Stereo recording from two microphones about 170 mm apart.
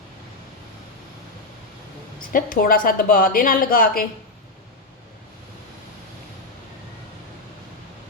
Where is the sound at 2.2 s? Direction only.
55° left (ahead or behind).